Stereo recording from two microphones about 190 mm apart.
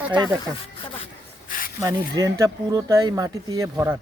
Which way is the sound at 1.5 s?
45° left (ahead or behind).